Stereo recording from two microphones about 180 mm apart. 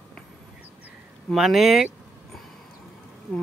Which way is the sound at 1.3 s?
Centre (ahead or behind).